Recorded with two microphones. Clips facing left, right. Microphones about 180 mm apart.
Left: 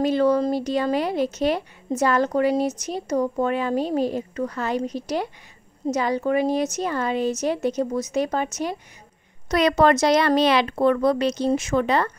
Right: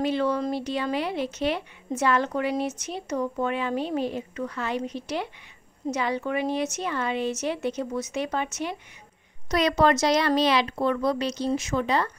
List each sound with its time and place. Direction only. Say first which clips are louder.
0.0 s speech: left 6 dB; 40° left (ahead or behind)
9.5 s speech: left 4 dB; 55° left (ahead or behind)